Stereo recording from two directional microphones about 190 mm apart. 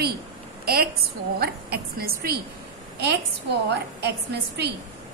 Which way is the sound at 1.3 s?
55° right (ahead or behind).